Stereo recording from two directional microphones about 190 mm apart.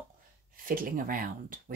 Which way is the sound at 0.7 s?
45° right (ahead or behind).